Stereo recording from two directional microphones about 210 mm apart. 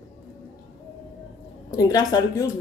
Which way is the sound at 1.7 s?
20° left (ahead or behind).